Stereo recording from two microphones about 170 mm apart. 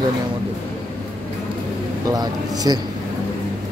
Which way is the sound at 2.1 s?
20° right (ahead or behind).